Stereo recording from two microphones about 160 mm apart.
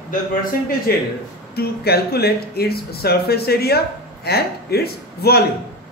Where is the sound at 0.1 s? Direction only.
65° left (ahead or behind).